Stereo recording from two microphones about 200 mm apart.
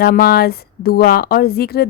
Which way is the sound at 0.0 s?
50° left (ahead or behind).